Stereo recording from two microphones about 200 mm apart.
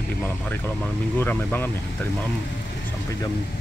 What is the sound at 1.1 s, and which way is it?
Speech, 10° left (ahead or behind).